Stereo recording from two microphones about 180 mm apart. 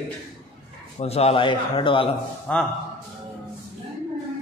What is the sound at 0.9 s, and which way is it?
A man's voice, 35° left (ahead or behind).